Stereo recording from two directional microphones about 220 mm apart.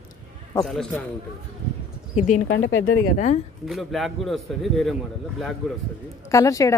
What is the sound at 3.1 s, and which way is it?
Speech, 35° left (ahead or behind).